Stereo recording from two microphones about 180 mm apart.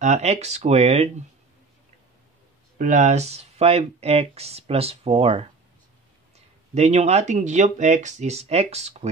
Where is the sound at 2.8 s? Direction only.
45° right (ahead or behind).